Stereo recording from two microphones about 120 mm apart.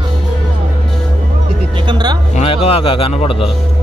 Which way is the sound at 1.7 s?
40° right (ahead or behind).